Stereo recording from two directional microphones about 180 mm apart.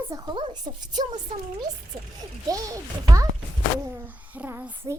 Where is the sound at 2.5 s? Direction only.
20° right (ahead or behind).